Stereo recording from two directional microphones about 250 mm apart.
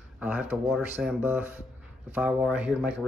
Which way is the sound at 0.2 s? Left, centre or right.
Centre.